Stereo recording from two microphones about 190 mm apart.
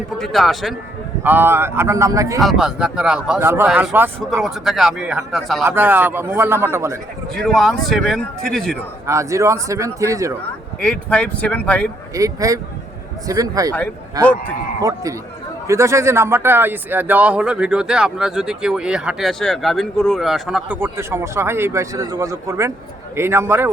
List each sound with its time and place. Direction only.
0.2 s a man's voice: centre (ahead or behind)
1.2 s a man's voice: 10° right (ahead or behind)
2.4 s a man's voice: centre (ahead or behind)
4.4 s a man's voice: centre (ahead or behind)
7.3 s a man's voice: centre (ahead or behind)
9.0 s a man's voice: 15° right (ahead or behind)
10.8 s speech: 5° left (ahead or behind)
12.1 s a man's voice: 15° right (ahead or behind)
13.7 s speech: 10° left (ahead or behind)
14.8 s a man's voice: 20° right (ahead or behind)